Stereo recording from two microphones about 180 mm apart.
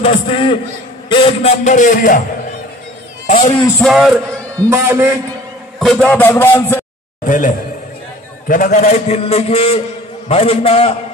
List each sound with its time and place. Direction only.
0.0 s a man's voice: 30° left (ahead or behind); by 2.2 s 50° left (ahead or behind)
3.8 s speech: centre (ahead or behind)
4.6 s a man's voice: 15° right (ahead or behind)
5.8 s a man's voice: centre (ahead or behind)
7.2 s a man's voice: 45° left (ahead or behind)